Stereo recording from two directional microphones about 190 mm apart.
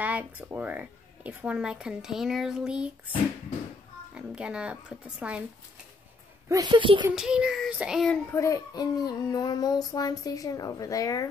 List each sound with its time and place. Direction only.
0.0 s speech: 10° right (ahead or behind)
4.1 s speech: 5° right (ahead or behind)
6.5 s a woman's voice: 20° right (ahead or behind)
7.1 s speech: 5° right (ahead or behind)
8.3 s a child's voice: 15° left (ahead or behind)